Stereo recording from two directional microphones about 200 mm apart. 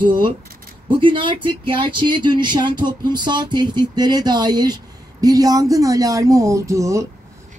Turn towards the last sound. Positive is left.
turn(degrees=-15)  # may be behind; listen again after turning